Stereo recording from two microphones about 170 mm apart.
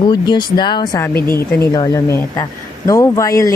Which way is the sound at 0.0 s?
25° left (ahead or behind).